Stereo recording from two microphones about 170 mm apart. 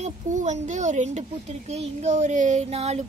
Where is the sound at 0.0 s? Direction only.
45° right (ahead or behind).